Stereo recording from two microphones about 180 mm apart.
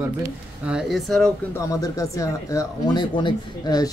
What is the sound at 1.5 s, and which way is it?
Speech, 15° left (ahead or behind).